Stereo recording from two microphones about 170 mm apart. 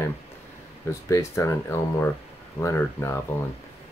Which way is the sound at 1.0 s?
20° left (ahead or behind).